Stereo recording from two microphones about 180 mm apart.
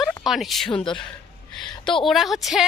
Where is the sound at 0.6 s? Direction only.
25° left (ahead or behind).